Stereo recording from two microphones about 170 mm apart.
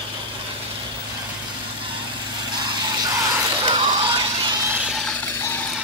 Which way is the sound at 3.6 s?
35° right (ahead or behind).